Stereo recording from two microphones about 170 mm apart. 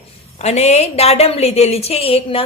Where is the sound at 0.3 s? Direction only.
40° left (ahead or behind).